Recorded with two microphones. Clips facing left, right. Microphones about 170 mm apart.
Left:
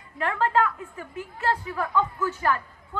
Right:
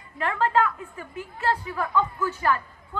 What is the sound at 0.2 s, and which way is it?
A woman's voice, 50° left (ahead or behind).